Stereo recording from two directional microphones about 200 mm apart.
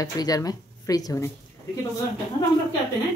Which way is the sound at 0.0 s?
20° left (ahead or behind).